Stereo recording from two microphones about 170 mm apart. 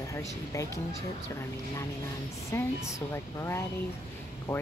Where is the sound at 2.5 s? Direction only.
15° left (ahead or behind).